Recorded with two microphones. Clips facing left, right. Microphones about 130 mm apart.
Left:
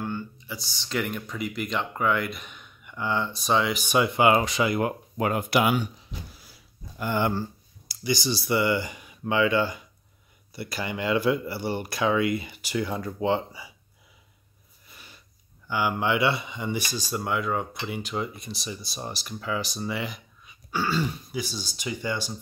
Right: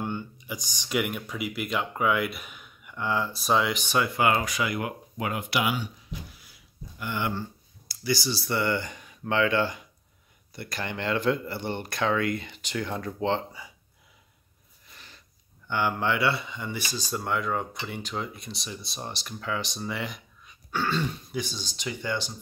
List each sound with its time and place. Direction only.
0.0 s speech: 20° right (ahead or behind); by 3.8 s centre (ahead or behind)
3.8 s speech: 20° left (ahead or behind); by 5.9 s 45° left (ahead or behind)
6.4 s a sound: 40° left (ahead or behind)
7.9 s speech: 20° left (ahead or behind)
14.9 s a sound: 10° left (ahead or behind)
15.7 s speech: 10° left (ahead or behind)